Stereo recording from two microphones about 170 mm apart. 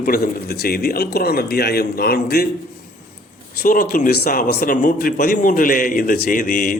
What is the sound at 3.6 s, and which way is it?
Speech, 55° left (ahead or behind).